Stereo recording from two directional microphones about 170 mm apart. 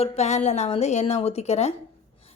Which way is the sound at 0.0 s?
40° left (ahead or behind).